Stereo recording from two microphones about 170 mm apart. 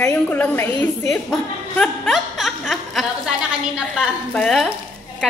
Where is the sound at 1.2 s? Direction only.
5° left (ahead or behind).